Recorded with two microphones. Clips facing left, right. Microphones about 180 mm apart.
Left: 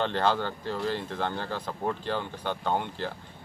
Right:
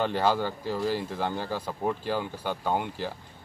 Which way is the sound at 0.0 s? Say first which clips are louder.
Right 1 dB; 10° right (ahead or behind).